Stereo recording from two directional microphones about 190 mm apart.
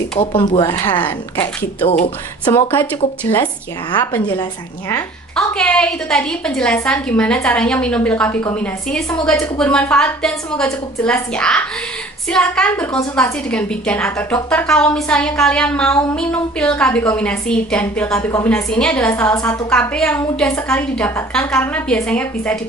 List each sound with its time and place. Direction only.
0.2 s speech: 30° left (ahead or behind)
0.6 s a woman's voice: 15° left (ahead or behind)
2.4 s a woman's voice: 10° left (ahead or behind)
5.3 s a woman's voice: 5° left (ahead or behind)